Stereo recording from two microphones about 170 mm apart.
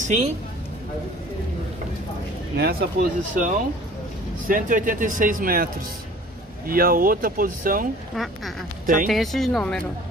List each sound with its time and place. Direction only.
0.0 s speech: 45° right (ahead or behind)
2.5 s speech: 70° right (ahead or behind); by 9.1 s 55° right (ahead or behind)
9.1 s speech: centre (ahead or behind)